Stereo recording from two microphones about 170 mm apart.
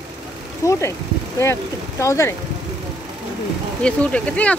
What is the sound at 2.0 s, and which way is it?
Speech, 15° left (ahead or behind).